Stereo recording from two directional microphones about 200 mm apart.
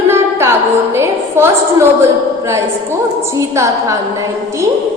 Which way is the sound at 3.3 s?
15° right (ahead or behind).